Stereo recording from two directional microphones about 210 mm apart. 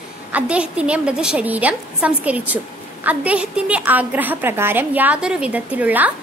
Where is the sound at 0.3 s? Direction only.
5° right (ahead or behind).